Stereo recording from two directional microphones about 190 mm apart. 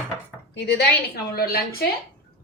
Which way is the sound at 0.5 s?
60° left (ahead or behind).